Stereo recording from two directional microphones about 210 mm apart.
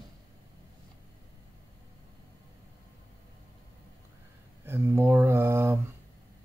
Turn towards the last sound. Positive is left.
turn(degrees=-10)  # may be behind; listen again after turning